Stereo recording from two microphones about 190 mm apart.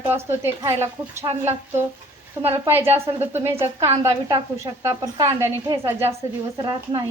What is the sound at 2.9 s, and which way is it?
A woman's voice, 10° right (ahead or behind).